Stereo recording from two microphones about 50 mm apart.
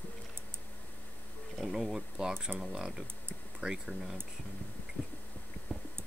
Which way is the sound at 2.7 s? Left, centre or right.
Centre.